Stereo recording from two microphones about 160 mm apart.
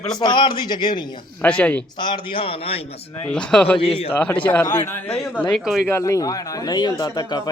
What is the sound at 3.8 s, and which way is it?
Speech, 35° left (ahead or behind).